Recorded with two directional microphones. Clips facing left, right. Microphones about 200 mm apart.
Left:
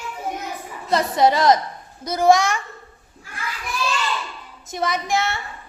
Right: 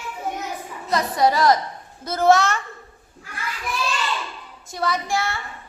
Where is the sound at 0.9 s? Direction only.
25° left (ahead or behind).